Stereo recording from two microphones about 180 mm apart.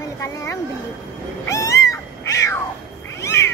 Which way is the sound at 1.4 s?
15° left (ahead or behind).